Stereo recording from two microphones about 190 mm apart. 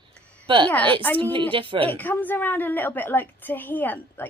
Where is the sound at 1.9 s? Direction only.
10° left (ahead or behind).